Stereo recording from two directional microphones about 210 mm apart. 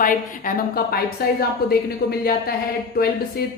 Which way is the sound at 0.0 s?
40° left (ahead or behind).